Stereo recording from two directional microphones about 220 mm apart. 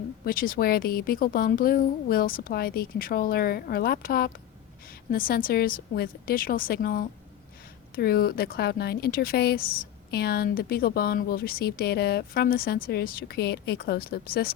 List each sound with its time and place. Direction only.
0.3 s a woman's voice: 40° left (ahead or behind)